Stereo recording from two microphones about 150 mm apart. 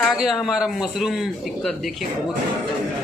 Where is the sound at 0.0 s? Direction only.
5° right (ahead or behind).